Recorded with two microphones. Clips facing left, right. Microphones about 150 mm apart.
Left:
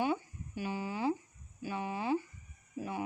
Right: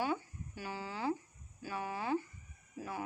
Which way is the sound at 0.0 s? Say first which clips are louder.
Left 3 dB; 15° left (ahead or behind).